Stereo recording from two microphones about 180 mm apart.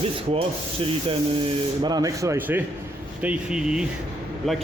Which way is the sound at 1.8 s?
20° right (ahead or behind).